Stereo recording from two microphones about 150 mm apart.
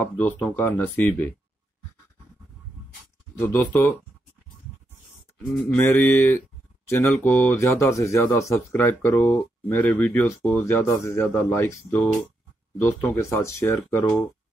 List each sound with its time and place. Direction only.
0.0 s speech: 15° left (ahead or behind)
3.3 s speech: 15° left (ahead or behind)
5.7 s speech: 15° left (ahead or behind)